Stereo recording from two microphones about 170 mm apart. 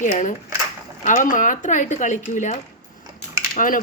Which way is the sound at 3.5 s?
55° left (ahead or behind).